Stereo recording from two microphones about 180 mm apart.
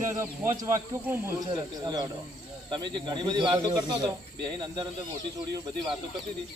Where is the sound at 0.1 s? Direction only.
15° right (ahead or behind).